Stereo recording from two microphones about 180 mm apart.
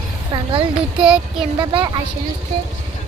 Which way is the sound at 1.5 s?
25° right (ahead or behind).